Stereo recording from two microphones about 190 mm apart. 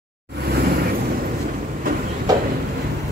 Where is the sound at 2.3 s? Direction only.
20° right (ahead or behind).